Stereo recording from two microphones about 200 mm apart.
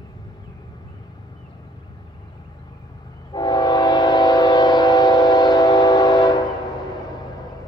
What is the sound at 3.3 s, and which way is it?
Train, 20° left (ahead or behind).